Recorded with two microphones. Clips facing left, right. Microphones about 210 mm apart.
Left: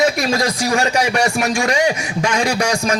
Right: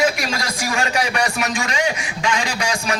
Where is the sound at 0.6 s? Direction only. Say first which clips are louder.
Left 2 dB; 40° left (ahead or behind).